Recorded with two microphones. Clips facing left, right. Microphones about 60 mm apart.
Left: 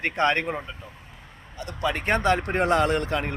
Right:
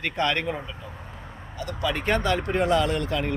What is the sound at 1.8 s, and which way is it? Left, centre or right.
Speech, left.